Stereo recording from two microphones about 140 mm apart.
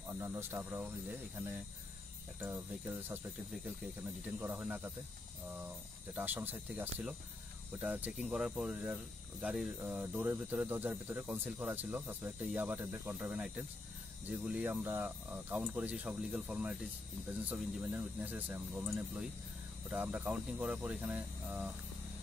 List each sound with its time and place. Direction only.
0.1 s speech: 20° right (ahead or behind)
4.4 s speech: 15° right (ahead or behind)
6.1 s speech: 15° right (ahead or behind)